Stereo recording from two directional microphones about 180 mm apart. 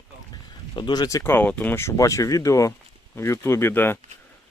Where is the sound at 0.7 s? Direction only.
25° left (ahead or behind).